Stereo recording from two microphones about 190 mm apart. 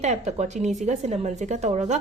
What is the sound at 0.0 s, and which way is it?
Speech, 35° right (ahead or behind).